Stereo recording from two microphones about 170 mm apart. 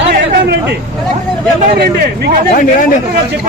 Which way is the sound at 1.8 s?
65° right (ahead or behind).